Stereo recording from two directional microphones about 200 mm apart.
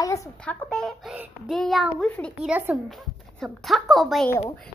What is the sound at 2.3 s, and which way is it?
A child's voice, 5° right (ahead or behind).